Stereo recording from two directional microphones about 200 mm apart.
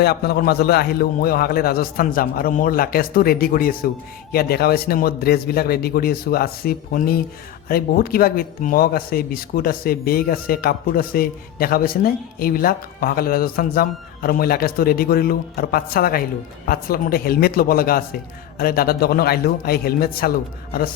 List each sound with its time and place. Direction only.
0.0 s speech: 50° left (ahead or behind)